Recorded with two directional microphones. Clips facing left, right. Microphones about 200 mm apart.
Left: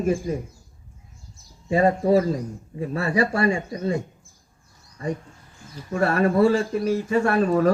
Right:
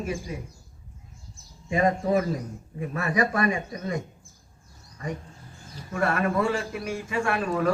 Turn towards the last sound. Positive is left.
turn(degrees=40)  # may be behind; listen again after turning